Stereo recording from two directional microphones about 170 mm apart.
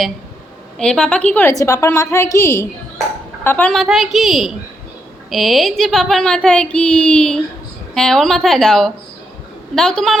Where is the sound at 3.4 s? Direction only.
10° left (ahead or behind).